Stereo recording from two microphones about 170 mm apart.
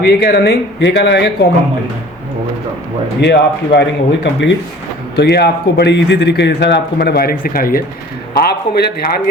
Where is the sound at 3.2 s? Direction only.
85° left.